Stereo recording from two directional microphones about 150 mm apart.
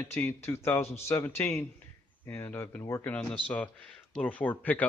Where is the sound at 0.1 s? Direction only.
15° left (ahead or behind).